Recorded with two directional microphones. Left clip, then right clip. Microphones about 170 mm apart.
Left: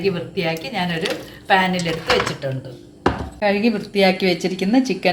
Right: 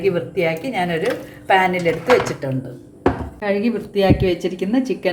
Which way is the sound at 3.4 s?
35° left (ahead or behind).